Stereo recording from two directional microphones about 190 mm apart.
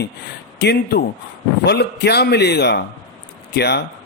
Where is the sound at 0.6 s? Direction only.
60° left (ahead or behind).